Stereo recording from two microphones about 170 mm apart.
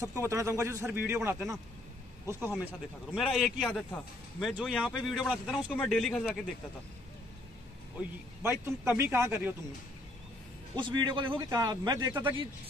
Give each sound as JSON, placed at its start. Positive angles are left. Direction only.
{"t": 0.0, "sound": "a man's voice", "side_deg": -20}
{"t": 8.4, "sound": "a man's voice", "side_deg": -15}
{"t": 10.8, "sound": "a man's voice", "side_deg": -25}